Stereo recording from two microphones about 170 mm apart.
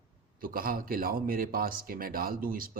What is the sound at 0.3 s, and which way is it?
Speech, 60° right (ahead or behind).